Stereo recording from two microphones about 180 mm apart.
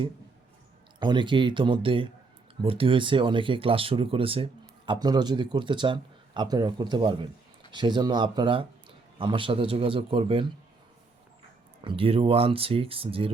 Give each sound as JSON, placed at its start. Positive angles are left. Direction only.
{"t": 0.9, "sound": "a man's voice", "side_deg": -25}
{"t": 11.8, "sound": "speech", "side_deg": -30}